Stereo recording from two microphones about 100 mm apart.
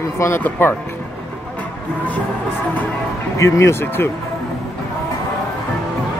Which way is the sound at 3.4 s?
25° left (ahead or behind).